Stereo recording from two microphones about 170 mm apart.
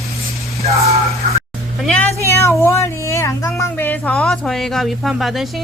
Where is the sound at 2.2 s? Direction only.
15° left (ahead or behind).